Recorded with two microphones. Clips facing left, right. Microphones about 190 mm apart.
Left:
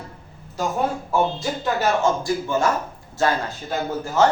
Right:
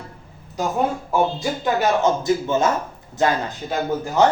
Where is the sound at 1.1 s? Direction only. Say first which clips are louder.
Right 1 dB; 15° right (ahead or behind).